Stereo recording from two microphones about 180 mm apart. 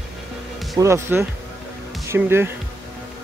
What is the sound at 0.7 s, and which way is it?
Speech, 15° right (ahead or behind).